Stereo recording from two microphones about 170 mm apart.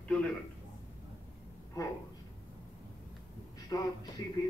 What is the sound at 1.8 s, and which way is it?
Speech, 20° left (ahead or behind).